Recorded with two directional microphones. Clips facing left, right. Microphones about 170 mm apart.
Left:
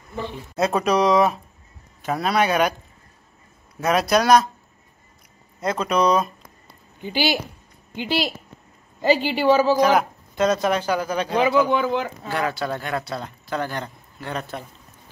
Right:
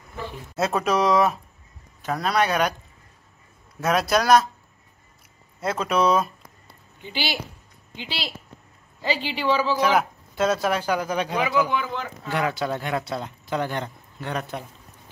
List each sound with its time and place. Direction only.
0.6 s speech: centre (ahead or behind)
3.8 s speech: centre (ahead or behind)
5.6 s speech: 5° right (ahead or behind)
7.0 s a woman's voice: 45° left (ahead or behind)
9.9 s speech: 5° right (ahead or behind)
11.7 s speech: 20° left (ahead or behind)
12.3 s speech: 15° right (ahead or behind)